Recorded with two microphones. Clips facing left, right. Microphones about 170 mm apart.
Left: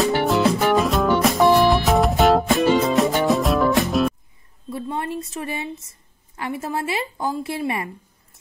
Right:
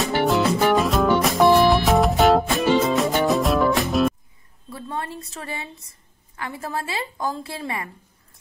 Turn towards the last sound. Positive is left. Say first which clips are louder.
# left 5 dB
turn(degrees=20)  # may be behind; listen again after turning